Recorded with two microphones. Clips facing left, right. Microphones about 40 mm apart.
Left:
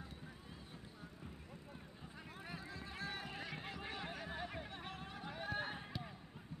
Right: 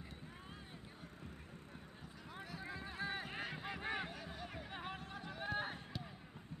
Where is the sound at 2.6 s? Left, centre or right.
Right.